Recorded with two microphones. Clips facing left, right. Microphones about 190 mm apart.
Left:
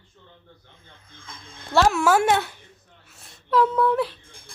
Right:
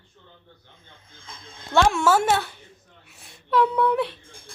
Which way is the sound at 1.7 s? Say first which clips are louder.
Left 1 dB; 5° left (ahead or behind).